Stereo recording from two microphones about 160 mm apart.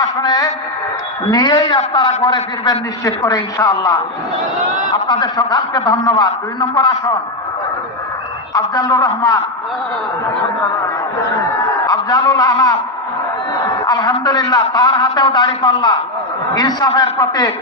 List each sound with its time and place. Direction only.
0.0 s a man's voice: 25° left (ahead or behind)
8.5 s a man's voice: 20° left (ahead or behind)
11.9 s a man's voice: 20° left (ahead or behind)
13.8 s a man's voice: 25° left (ahead or behind)